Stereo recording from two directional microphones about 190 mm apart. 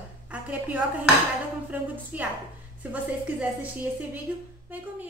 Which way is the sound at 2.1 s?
10° right (ahead or behind).